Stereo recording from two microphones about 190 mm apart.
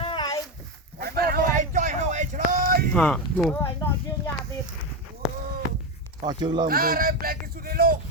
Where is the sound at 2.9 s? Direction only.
5° left (ahead or behind).